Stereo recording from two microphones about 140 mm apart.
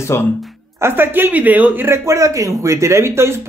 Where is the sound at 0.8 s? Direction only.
15° right (ahead or behind).